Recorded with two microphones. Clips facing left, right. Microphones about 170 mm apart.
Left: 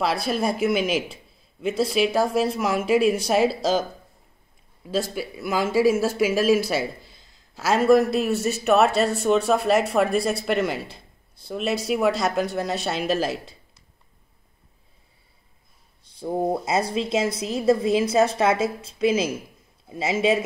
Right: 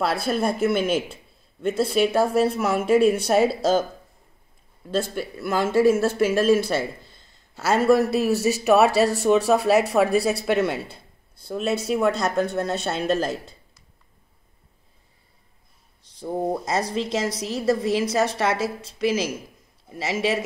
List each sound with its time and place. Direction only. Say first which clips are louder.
0.0 s speech: right 1 dB; centre (ahead or behind)
5.1 s speech: right 1 dB; 5° left (ahead or behind)
16.2 s a woman's voice: left 1 dB; 10° left (ahead or behind)